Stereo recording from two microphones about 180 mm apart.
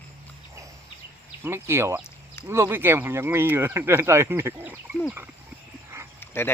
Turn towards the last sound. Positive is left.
turn(degrees=10)  # may be behind; listen again after turning